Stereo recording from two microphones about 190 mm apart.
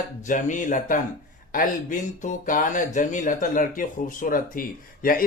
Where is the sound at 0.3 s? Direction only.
40° left (ahead or behind).